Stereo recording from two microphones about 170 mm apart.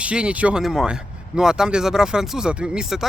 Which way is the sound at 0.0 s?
5° right (ahead or behind).